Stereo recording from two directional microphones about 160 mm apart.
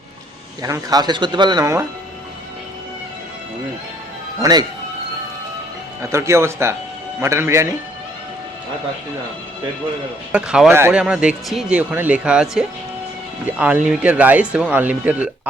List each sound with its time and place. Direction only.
0.6 s speech: 20° right (ahead or behind)
4.4 s speech: 20° right (ahead or behind)
6.0 s speech: 20° right (ahead or behind)
10.3 s speech: 5° right (ahead or behind)